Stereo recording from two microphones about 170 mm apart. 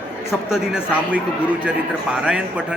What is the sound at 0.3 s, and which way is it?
Speech, 5° right (ahead or behind).